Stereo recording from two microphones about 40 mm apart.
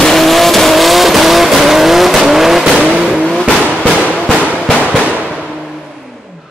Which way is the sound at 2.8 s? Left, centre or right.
Right.